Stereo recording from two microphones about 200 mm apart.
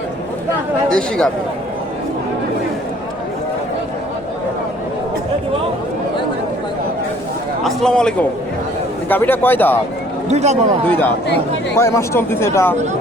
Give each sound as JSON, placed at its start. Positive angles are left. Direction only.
{"t": 0.9, "sound": "speech", "side_deg": 5}
{"t": 7.6, "sound": "a man's voice", "side_deg": 0}
{"t": 10.2, "sound": "speech", "side_deg": -35}
{"t": 10.8, "sound": "speech", "side_deg": 10}